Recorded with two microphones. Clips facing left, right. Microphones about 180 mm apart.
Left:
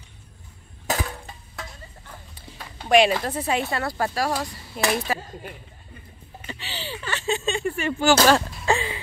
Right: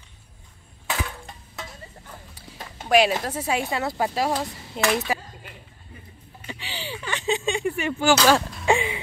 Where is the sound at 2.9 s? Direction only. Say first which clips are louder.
Left 1 dB; 5° right (ahead or behind).